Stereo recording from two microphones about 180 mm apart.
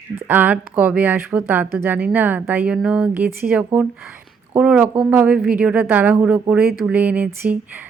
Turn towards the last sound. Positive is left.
turn(degrees=-10)  # may be behind; listen again after turning